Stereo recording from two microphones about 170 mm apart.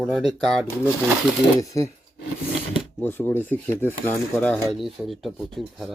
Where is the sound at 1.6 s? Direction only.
20° left (ahead or behind).